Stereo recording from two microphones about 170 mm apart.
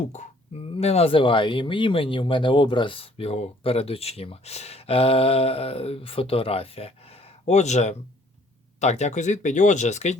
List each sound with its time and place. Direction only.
0.0 s speech: 45° left (ahead or behind)